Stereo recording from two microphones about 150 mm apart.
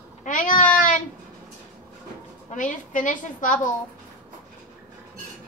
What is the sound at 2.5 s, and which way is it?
A woman's voice, 60° left (ahead or behind).